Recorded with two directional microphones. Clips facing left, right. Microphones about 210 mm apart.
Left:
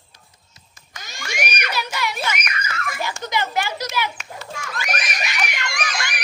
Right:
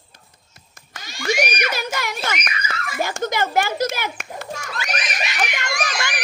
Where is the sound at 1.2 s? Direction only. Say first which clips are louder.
Right 7 dB; 45° right (ahead or behind).